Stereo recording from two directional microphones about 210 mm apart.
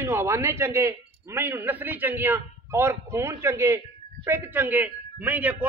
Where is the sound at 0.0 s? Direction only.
10° right (ahead or behind).